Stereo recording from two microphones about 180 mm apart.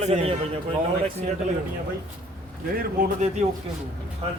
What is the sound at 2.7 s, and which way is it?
Speech, 45° right (ahead or behind).